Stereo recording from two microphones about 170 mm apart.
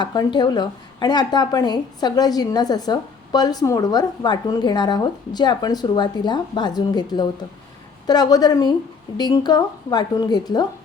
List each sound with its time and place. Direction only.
0.0 s speech: 25° left (ahead or behind)